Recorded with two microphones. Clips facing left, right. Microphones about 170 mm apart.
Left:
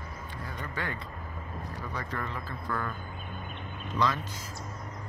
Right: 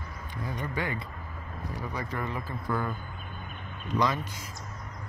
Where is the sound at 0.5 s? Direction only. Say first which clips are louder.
Right 4 dB; 15° right (ahead or behind).